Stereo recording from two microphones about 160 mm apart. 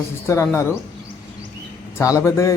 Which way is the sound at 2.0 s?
20° left (ahead or behind).